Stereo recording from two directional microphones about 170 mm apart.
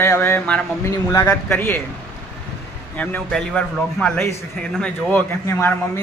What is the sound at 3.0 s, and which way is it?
A man's voice, 5° left (ahead or behind).